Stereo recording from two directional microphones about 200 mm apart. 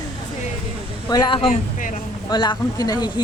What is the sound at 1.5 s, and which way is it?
Speech, 40° left (ahead or behind).